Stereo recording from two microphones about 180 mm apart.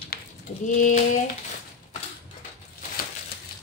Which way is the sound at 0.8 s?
45° left (ahead or behind).